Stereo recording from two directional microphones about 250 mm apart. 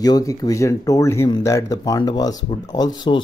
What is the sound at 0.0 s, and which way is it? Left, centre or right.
Speech, centre.